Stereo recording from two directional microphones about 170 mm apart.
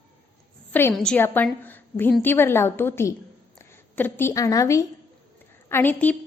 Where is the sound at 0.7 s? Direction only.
15° left (ahead or behind).